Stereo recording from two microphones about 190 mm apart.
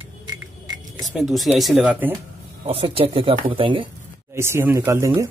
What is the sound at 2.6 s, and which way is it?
Speech, 30° right (ahead or behind).